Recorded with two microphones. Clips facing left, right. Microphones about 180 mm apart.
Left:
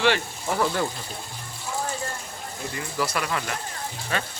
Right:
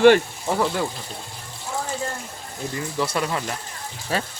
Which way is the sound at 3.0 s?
25° right (ahead or behind).